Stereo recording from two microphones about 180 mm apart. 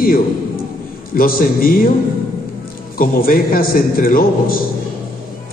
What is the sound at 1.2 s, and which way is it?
Speech, 55° left (ahead or behind).